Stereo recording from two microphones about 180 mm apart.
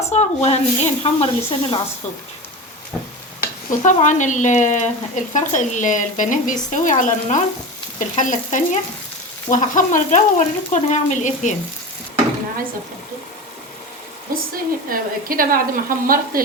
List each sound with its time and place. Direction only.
0.1 s speech: 35° left (ahead or behind)
3.7 s speech: 45° left (ahead or behind)
14.3 s speech: 55° right (ahead or behind)